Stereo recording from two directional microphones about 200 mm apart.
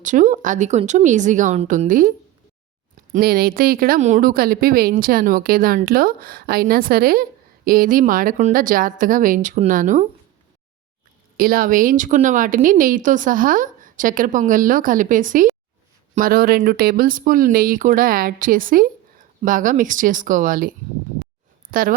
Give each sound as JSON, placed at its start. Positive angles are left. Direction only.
{"t": 0.0, "sound": "a woman's voice", "side_deg": -40}
{"t": 11.3, "sound": "a woman's voice", "side_deg": -45}